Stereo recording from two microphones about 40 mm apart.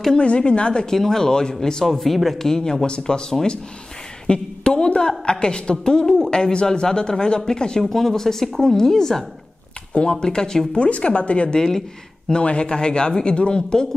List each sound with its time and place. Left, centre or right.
0.2 s speech: left
0.8 s a woman's voice: centre
7.8 s speech: centre
10.2 s speech: centre
10.7 s speech: left